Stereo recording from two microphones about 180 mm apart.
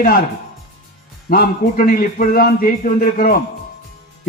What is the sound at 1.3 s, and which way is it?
A man's voice, 50° left (ahead or behind).